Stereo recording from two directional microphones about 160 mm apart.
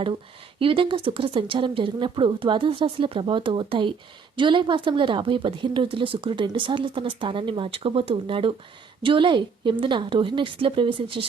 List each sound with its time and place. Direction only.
0.6 s a woman's voice: 35° right (ahead or behind)